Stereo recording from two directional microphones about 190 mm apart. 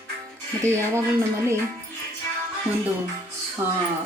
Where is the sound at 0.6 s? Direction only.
15° right (ahead or behind).